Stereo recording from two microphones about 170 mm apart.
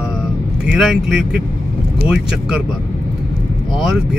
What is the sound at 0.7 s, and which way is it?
Speech, 5° right (ahead or behind).